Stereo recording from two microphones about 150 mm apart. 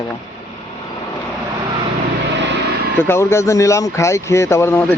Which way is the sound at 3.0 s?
15° left (ahead or behind).